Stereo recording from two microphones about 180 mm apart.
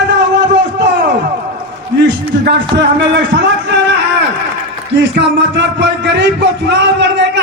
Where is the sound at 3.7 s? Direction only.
75° right (ahead or behind).